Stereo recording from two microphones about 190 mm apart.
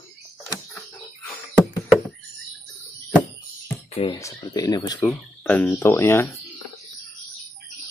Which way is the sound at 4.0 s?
25° left (ahead or behind).